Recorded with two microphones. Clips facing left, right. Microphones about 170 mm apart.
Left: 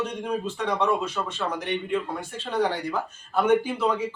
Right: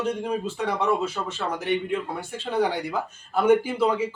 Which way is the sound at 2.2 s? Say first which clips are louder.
Right 1 dB; 10° right (ahead or behind).